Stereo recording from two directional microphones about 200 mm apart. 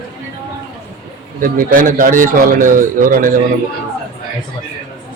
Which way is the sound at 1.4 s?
45° right (ahead or behind).